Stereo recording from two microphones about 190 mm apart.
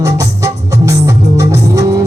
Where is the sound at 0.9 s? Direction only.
15° right (ahead or behind).